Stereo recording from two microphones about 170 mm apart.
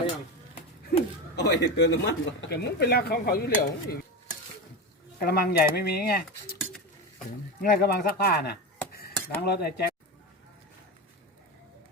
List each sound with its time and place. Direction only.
1.4 s speech: 80° left
5.2 s speech: 65° left (ahead or behind)
7.6 s speech: 70° left (ahead or behind)